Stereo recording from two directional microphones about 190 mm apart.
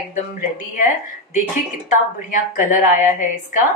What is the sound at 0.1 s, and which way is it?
Speech, 40° left (ahead or behind).